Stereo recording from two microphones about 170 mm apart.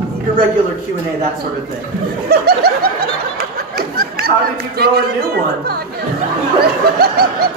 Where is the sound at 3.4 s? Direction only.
65° right (ahead or behind).